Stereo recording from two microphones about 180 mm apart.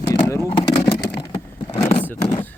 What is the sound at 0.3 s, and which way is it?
Speech, 15° left (ahead or behind).